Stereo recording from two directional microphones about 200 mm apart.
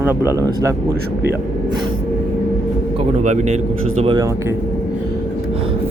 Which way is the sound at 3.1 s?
35° right (ahead or behind).